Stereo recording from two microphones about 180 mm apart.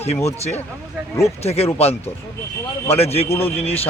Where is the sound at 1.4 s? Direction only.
35° left (ahead or behind).